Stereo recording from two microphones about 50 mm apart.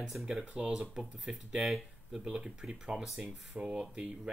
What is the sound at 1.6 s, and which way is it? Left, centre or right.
Speech, centre.